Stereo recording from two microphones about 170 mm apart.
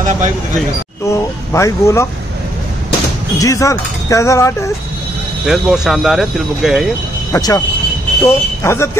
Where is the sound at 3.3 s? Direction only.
20° left (ahead or behind).